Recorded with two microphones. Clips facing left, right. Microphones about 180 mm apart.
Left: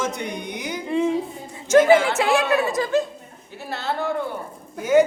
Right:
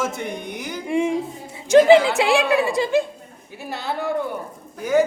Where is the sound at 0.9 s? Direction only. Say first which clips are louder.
Right 1 dB; 15° right (ahead or behind).